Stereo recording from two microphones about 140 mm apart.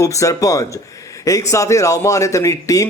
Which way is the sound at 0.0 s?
25° left (ahead or behind).